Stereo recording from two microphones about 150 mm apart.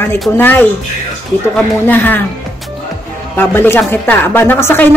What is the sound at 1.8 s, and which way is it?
Speech, 10° left (ahead or behind).